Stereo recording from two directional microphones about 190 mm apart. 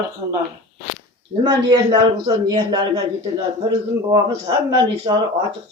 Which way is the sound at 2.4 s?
20° right (ahead or behind).